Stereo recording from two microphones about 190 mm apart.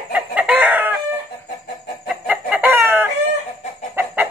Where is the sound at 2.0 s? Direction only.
10° right (ahead or behind).